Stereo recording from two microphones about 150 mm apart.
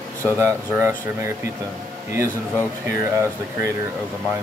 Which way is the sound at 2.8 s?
15° right (ahead or behind).